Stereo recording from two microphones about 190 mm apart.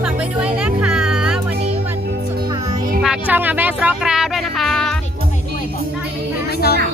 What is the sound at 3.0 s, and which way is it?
Music, 5° right (ahead or behind).